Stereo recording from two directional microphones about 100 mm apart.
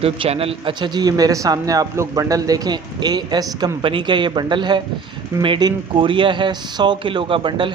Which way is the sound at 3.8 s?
55° right (ahead or behind).